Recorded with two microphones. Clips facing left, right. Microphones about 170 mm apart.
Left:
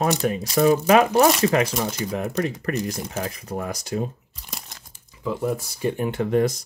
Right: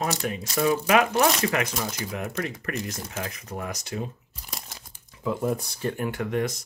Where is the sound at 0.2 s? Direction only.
40° left (ahead or behind).